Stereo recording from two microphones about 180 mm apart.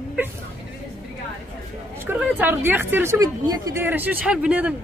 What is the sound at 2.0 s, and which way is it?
Speech, 10° right (ahead or behind).